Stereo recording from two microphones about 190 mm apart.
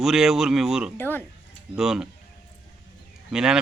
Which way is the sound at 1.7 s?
5° right (ahead or behind).